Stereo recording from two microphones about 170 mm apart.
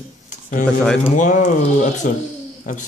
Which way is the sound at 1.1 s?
50° left (ahead or behind).